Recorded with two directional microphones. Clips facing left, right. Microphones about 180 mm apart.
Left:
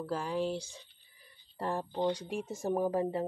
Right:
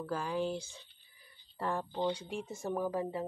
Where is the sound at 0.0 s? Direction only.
30° left (ahead or behind).